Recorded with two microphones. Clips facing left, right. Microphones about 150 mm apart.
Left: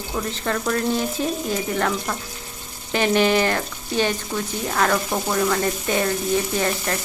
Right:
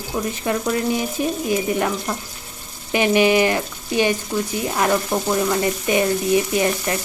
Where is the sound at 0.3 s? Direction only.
10° right (ahead or behind).